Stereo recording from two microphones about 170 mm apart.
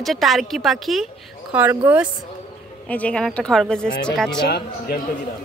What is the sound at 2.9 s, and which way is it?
A woman's voice, 5° left (ahead or behind).